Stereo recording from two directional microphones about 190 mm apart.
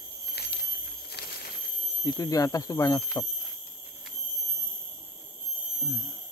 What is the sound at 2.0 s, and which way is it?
Speech, 20° left (ahead or behind).